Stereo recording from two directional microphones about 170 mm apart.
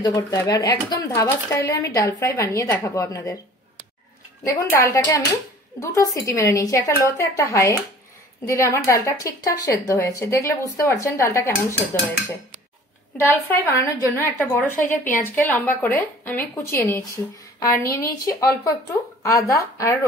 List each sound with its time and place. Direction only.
0.0 s speech: 20° left (ahead or behind)
4.5 s a woman's voice: 15° left (ahead or behind)
13.2 s a woman's voice: 15° left (ahead or behind)
19.2 s a woman's voice: 20° left (ahead or behind)